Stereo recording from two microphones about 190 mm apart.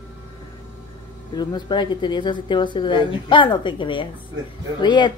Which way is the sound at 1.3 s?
25° left (ahead or behind).